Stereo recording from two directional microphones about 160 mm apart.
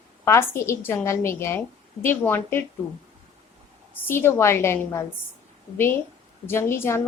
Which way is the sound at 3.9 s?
15° left (ahead or behind).